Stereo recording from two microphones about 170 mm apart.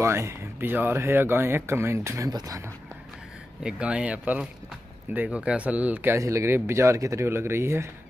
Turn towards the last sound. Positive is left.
turn(degrees=-15)  # may be behind; listen again after turning